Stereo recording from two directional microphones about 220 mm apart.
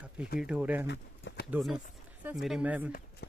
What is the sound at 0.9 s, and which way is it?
Pigeon, 55° left (ahead or behind).